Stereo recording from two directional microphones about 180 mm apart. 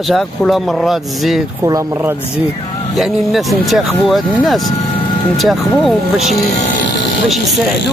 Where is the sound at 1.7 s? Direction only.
20° right (ahead or behind).